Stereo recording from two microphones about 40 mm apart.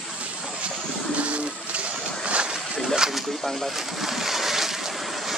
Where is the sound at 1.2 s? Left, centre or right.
Right.